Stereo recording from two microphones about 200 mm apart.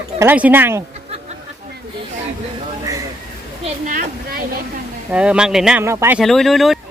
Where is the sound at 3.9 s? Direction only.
45° right (ahead or behind).